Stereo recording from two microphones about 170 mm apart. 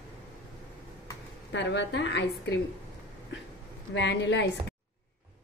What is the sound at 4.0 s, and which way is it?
Speech, 90° left.